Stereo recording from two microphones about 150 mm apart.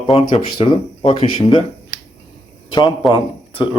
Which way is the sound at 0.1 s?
35° left (ahead or behind).